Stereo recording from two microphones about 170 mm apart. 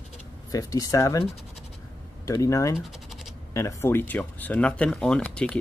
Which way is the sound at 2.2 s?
20° left (ahead or behind).